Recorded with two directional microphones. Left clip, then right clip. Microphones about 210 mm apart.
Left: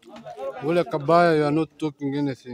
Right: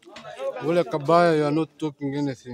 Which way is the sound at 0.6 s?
5° left (ahead or behind).